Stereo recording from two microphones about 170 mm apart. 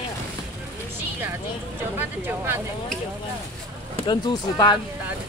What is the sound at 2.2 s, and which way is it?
Speech, 10° right (ahead or behind).